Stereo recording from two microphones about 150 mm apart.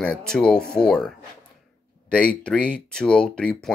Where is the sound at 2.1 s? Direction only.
10° left (ahead or behind).